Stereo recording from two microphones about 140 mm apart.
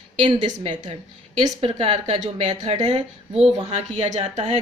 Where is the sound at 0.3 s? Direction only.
60° right (ahead or behind).